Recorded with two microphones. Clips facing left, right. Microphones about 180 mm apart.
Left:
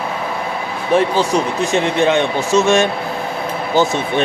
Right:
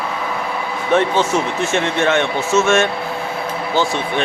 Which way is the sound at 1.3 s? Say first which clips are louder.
Left 2 dB; 15° left (ahead or behind).